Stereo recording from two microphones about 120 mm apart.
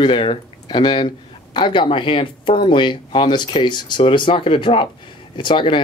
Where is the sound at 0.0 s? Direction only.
45° left (ahead or behind).